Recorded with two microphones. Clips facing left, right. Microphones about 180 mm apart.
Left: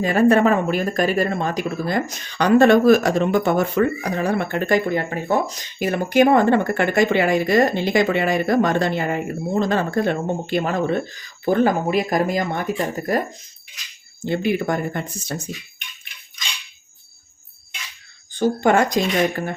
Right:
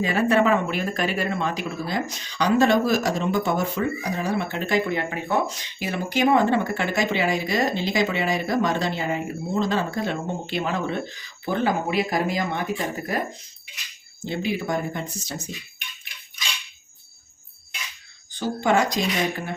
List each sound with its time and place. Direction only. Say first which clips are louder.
0.0 s speech: left 5 dB; 45° left (ahead or behind)
14.3 s speech: left 5 dB; 55° left (ahead or behind)
18.3 s speech: left 5 dB; 50° left (ahead or behind)